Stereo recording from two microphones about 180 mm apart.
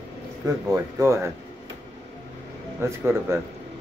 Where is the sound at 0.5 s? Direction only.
20° right (ahead or behind).